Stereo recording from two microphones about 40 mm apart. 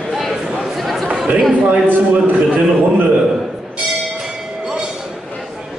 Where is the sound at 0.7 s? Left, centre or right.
Centre.